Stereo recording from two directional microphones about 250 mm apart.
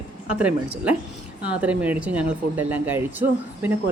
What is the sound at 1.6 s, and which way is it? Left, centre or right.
Speech, centre.